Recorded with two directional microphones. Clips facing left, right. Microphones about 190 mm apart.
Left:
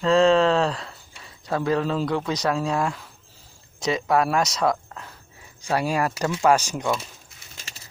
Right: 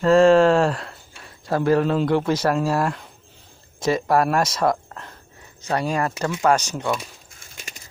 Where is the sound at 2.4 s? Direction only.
5° right (ahead or behind); by 6.9 s 10° left (ahead or behind).